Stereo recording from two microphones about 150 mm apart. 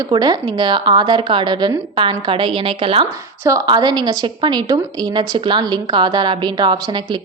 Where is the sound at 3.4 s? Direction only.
25° right (ahead or behind).